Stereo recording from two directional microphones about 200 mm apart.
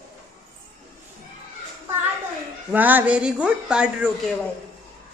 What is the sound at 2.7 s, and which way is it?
A woman's voice, 10° right (ahead or behind).